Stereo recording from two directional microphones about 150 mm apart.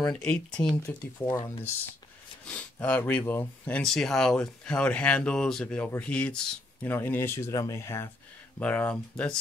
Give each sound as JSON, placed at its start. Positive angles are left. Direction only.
{"t": 0.1, "sound": "speech", "side_deg": 5}
{"t": 1.2, "sound": "speech", "side_deg": 30}
{"t": 2.4, "sound": "speech", "side_deg": 10}